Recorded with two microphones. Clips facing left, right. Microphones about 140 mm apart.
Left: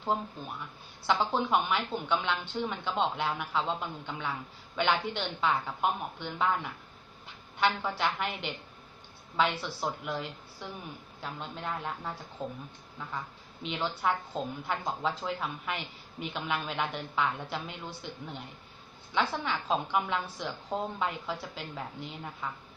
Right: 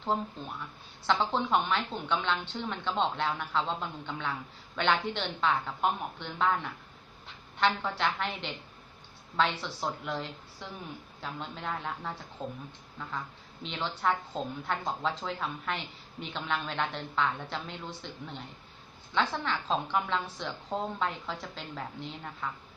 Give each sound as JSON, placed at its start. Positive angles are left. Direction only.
{"t": 1.0, "sound": "a woman's voice", "side_deg": 10}